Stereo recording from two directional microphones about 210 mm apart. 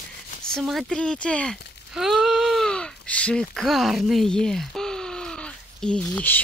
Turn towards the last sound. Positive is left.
turn(degrees=10)  # may be behind; listen again after turning